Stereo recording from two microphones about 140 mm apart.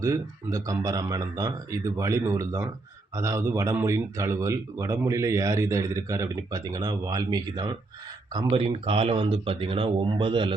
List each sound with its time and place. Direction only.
0.0 s speech: 25° right (ahead or behind)
8.5 s speech: 45° right (ahead or behind)